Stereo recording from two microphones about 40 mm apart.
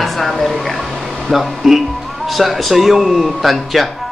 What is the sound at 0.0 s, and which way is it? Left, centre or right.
Speech, centre.